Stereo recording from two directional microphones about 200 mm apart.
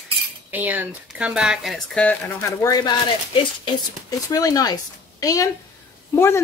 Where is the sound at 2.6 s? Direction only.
20° left (ahead or behind).